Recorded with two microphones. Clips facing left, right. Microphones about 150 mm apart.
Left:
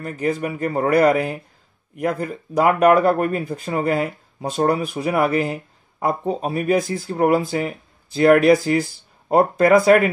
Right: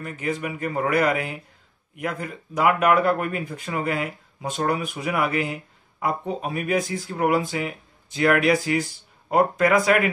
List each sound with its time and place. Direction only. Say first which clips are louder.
0.0 s speech: left 5 dB; 35° left (ahead or behind)